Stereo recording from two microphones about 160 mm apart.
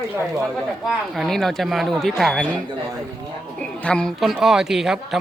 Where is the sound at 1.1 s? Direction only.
Centre (ahead or behind).